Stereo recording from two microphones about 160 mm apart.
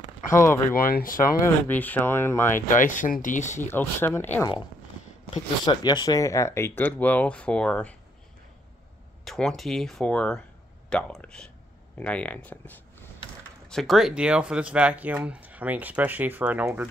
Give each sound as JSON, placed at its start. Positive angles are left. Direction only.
{"t": 0.3, "sound": "speech", "side_deg": 15}
{"t": 0.7, "sound": "speech", "side_deg": 65}
{"t": 1.7, "sound": "speech", "side_deg": 10}
{"t": 2.8, "sound": "speech", "side_deg": 55}
{"t": 3.6, "sound": "speech", "side_deg": 15}
{"t": 5.3, "sound": "speech", "side_deg": 30}
{"t": 9.2, "sound": "speech", "side_deg": 5}